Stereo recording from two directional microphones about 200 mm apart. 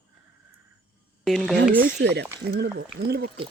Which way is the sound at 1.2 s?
Centre (ahead or behind).